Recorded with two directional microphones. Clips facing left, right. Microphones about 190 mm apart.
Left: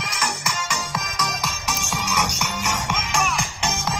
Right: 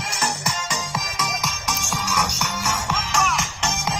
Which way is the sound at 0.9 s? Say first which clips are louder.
Even; 5° right (ahead or behind).